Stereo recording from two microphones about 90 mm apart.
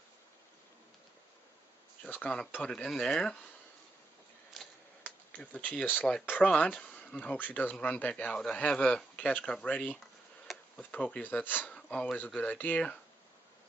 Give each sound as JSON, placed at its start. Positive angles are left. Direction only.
{"t": 2.0, "sound": "a man's voice", "side_deg": 15}
{"t": 4.6, "sound": "tick-tock", "side_deg": 0}
{"t": 5.0, "sound": "a man's voice", "side_deg": 15}